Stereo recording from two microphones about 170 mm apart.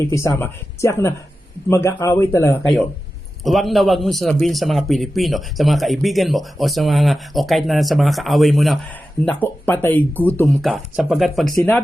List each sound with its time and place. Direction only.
0.1 s speech: 15° left (ahead or behind)
3.4 s a man's voice: centre (ahead or behind)
10.6 s a man's voice: centre (ahead or behind)
11.5 s speech: 15° left (ahead or behind)